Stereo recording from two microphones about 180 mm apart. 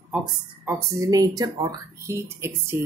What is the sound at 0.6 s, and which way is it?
Speech, 15° right (ahead or behind).